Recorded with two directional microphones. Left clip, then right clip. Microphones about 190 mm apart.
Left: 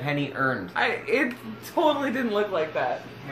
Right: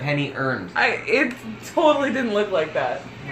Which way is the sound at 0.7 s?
5° right (ahead or behind).